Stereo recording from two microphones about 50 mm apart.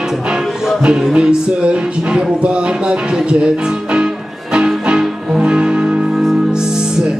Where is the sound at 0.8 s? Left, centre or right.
Centre.